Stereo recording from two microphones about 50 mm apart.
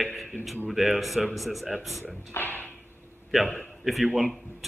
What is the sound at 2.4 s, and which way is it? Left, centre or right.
Drawer open or close, left.